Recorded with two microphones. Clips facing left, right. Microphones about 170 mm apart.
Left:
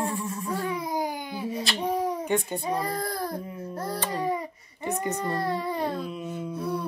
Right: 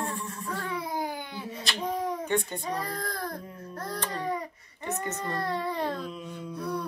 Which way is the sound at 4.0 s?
10° left (ahead or behind).